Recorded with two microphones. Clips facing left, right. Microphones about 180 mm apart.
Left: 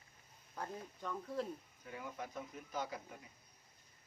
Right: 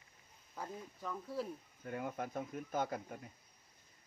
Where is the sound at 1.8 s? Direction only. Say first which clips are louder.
Right 7 dB; 55° right (ahead or behind).